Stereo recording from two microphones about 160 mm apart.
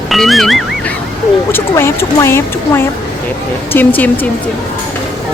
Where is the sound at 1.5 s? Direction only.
15° left (ahead or behind).